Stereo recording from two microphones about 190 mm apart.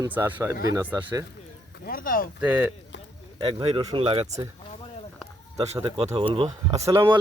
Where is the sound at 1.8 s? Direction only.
50° left (ahead or behind).